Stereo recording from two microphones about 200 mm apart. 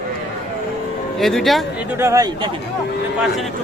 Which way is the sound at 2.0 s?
15° right (ahead or behind).